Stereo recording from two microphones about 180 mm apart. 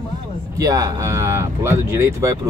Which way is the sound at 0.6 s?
20° right (ahead or behind).